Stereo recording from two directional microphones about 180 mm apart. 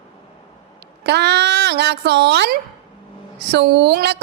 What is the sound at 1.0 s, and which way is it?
A woman's voice, 70° right (ahead or behind).